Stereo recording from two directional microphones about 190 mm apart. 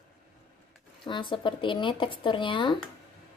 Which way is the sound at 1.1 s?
25° left (ahead or behind).